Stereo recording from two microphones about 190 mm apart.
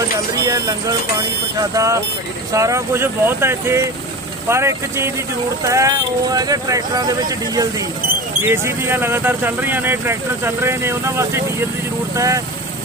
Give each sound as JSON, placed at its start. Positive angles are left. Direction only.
{"t": 0.4, "sound": "speech", "side_deg": -20}